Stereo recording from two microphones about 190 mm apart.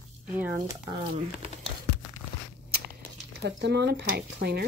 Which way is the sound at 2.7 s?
60° right (ahead or behind).